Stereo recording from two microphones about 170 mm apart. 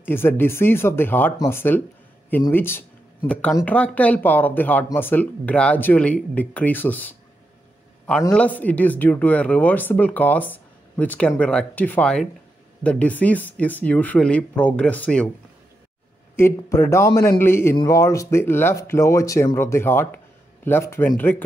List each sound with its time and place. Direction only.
0.0 s speech: 10° left (ahead or behind)
8.3 s speech: 10° left (ahead or behind)
16.3 s speech: 15° left (ahead or behind)